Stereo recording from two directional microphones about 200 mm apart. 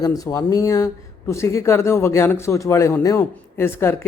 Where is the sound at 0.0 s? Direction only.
20° left (ahead or behind).